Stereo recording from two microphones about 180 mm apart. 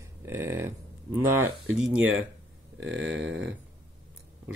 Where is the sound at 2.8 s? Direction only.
90° right.